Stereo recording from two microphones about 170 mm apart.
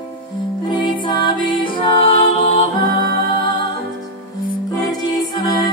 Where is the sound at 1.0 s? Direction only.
25° left (ahead or behind).